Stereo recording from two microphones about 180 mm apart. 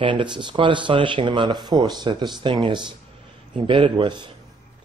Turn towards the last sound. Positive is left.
turn(degrees=-25)  # may be behind; listen again after turning